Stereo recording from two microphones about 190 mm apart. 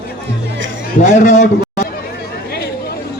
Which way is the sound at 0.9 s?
40° left (ahead or behind).